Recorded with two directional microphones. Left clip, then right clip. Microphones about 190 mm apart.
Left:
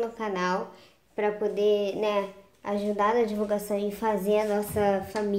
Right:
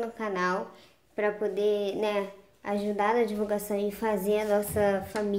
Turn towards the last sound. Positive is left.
turn(degrees=-5)  # may be behind; listen again after turning